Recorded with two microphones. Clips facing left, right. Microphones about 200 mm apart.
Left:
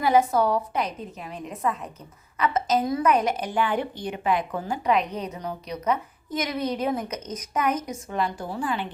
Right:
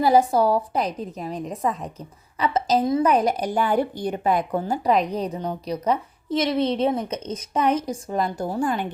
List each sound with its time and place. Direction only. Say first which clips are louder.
0.0 s a woman's voice: right 3 dB; 35° right (ahead or behind)